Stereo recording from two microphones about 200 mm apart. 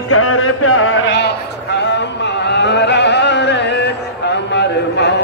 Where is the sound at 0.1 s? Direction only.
90° left.